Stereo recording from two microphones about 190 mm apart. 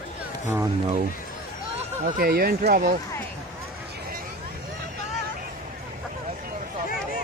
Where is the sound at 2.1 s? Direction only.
55° right (ahead or behind).